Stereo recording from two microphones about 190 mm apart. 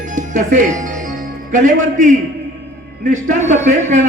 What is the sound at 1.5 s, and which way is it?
A man's voice, 40° right (ahead or behind).